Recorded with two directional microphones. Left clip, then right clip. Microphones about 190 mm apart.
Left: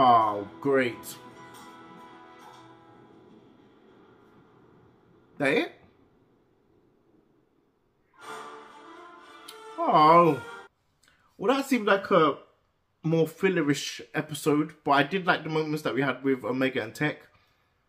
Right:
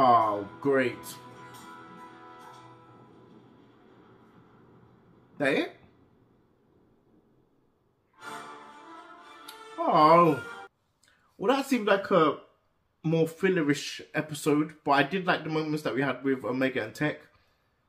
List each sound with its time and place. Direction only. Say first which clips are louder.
0.0 s music: left 1 dB; 20° left (ahead or behind)
5.4 s speech: left 2 dB; 20° left (ahead or behind)
9.8 s speech: left 1 dB; 20° left (ahead or behind)
11.3 s speech: left 1 dB; 15° left (ahead or behind)